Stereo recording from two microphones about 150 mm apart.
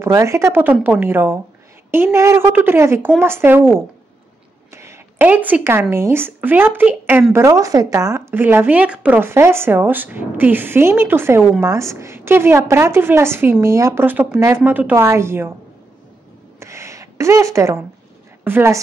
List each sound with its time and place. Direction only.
0.0 s a woman's voice: 20° right (ahead or behind)
16.5 s a sound: 20° right (ahead or behind)
18.4 s a woman's voice: 15° right (ahead or behind)